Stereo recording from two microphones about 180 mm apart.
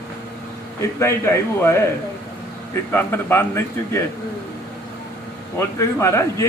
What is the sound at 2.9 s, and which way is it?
A man's voice, 10° left (ahead or behind).